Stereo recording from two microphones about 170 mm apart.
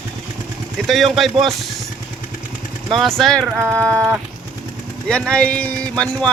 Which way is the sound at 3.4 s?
15° right (ahead or behind).